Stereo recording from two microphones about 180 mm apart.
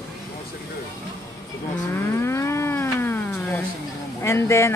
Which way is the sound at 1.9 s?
15° left (ahead or behind).